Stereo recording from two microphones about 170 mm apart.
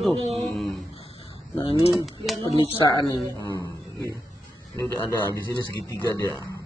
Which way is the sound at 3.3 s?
20° left (ahead or behind).